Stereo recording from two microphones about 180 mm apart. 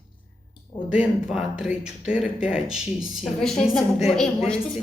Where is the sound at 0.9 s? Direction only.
5° right (ahead or behind).